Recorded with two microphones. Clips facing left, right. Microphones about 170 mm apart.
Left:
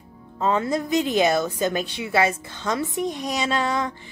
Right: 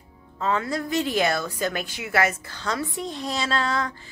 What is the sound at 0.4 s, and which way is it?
A woman's voice, 20° left (ahead or behind).